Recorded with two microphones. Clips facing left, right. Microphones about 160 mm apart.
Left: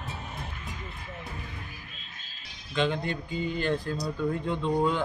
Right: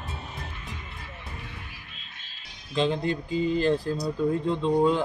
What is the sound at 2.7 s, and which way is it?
Speech, 30° right (ahead or behind).